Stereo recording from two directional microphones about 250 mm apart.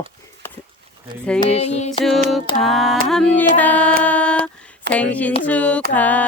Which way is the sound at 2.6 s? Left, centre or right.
Centre.